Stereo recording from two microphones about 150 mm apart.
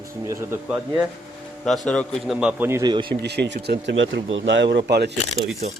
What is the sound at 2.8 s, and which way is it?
Speech, 30° right (ahead or behind).